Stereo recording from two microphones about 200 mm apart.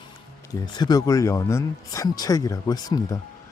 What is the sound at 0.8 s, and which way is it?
Speech, 20° left (ahead or behind).